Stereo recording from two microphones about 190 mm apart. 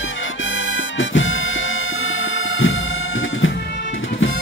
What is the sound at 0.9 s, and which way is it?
Music, 90° left.